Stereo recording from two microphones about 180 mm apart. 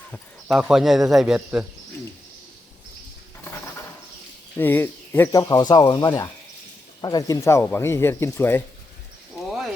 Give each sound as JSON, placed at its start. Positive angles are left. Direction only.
{"t": 0.1, "sound": "speech", "side_deg": 0}
{"t": 4.5, "sound": "speech", "side_deg": 10}
{"t": 9.5, "sound": "a sound", "side_deg": 0}